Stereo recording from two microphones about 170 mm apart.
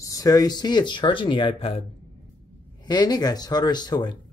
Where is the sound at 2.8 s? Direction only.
25° left (ahead or behind).